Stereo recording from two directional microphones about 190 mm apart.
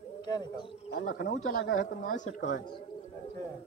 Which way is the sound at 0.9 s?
55° left (ahead or behind).